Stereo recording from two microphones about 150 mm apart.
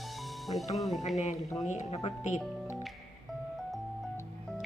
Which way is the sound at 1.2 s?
50° left (ahead or behind).